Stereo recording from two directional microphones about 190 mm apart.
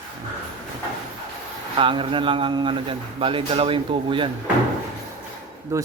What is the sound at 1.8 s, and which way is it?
A man's voice, 25° right (ahead or behind).